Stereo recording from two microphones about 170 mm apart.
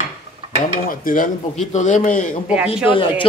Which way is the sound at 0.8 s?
55° left (ahead or behind).